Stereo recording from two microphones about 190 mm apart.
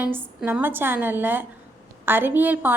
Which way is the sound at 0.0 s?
10° right (ahead or behind).